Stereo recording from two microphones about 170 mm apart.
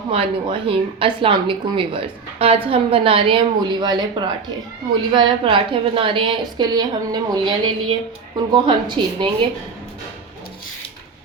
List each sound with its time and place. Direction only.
0.1 s a woman's voice: 30° right (ahead or behind)